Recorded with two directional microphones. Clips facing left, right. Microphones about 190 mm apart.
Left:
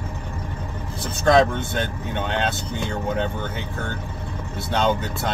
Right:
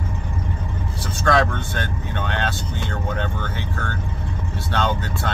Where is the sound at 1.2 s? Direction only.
20° left (ahead or behind).